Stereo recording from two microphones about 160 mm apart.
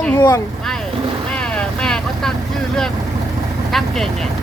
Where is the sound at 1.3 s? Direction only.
5° left (ahead or behind).